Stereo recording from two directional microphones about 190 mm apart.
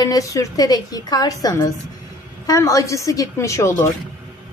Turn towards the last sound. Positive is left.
turn(degrees=15)  # may be behind; listen again after turning